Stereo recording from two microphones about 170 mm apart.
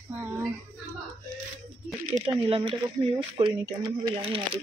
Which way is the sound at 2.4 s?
30° right (ahead or behind).